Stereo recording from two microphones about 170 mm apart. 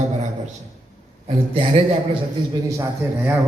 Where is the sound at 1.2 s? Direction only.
35° right (ahead or behind).